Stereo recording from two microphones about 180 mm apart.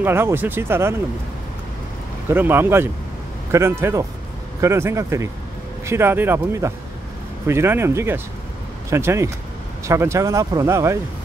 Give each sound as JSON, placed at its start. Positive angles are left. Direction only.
{"t": 0.0, "sound": "speech", "side_deg": -10}
{"t": 2.2, "sound": "speech", "side_deg": -10}